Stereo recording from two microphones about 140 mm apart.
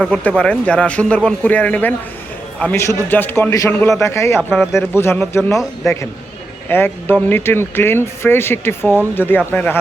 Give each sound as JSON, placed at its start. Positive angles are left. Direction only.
{"t": 0.0, "sound": "a man's voice", "side_deg": 10}
{"t": 4.4, "sound": "speech", "side_deg": -5}
{"t": 4.8, "sound": "speech", "side_deg": 15}
{"t": 6.7, "sound": "speech", "side_deg": 15}